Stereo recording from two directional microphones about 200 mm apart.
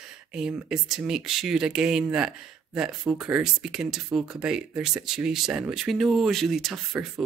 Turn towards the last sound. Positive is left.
turn(degrees=0)  # may be behind; listen again after turning